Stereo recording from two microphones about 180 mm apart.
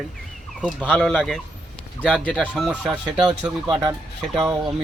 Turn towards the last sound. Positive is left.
turn(degrees=0)  # may be behind; listen again after turning